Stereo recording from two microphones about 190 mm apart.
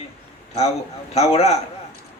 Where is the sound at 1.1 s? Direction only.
35° left (ahead or behind).